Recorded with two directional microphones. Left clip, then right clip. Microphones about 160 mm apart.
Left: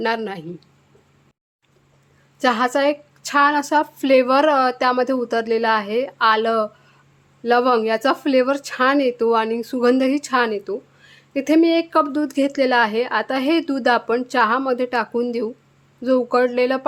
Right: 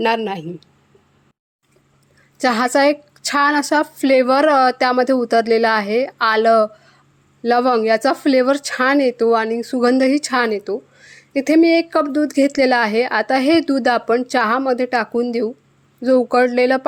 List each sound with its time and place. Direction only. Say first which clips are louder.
0.0 s speech: right 4 dB; 25° right (ahead or behind)
2.4 s speech: right 3 dB; 30° right (ahead or behind)